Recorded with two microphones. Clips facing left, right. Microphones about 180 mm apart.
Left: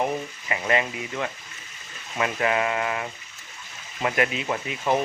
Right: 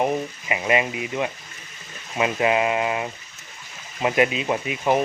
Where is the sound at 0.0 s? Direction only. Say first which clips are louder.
Right 4 dB; 20° right (ahead or behind).